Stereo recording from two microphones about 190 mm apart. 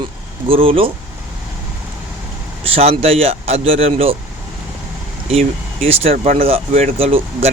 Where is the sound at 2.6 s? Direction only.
30° right (ahead or behind).